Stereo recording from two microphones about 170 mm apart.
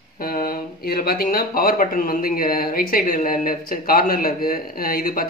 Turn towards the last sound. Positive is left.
turn(degrees=60)  # may be behind; listen again after turning